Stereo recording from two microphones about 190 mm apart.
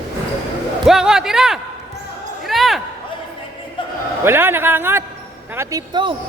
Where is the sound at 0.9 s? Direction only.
5° right (ahead or behind).